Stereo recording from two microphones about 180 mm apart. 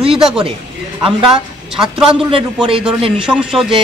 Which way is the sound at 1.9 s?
30° right (ahead or behind).